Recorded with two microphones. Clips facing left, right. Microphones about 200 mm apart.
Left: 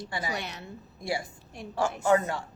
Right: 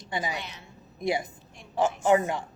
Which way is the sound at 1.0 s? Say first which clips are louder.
Right 5 dB; 20° right (ahead or behind).